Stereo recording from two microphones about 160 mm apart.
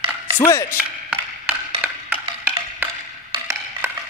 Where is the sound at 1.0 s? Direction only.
10° right (ahead or behind).